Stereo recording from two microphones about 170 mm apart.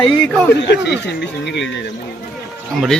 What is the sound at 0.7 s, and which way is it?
Speech, 90° left.